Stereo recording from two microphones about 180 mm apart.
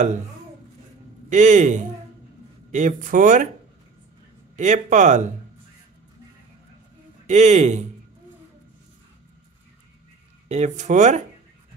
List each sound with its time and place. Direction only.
1.3 s speech: 45° right (ahead or behind)
4.6 s speech: 45° right (ahead or behind)
7.2 s speech: 40° right (ahead or behind)
10.5 s speech: 40° right (ahead or behind)